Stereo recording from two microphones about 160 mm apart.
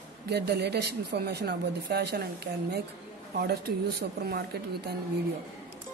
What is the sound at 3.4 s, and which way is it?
Speech, 75° right (ahead or behind).